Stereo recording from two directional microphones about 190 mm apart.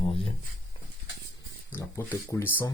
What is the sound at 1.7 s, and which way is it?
Speech, 10° left (ahead or behind).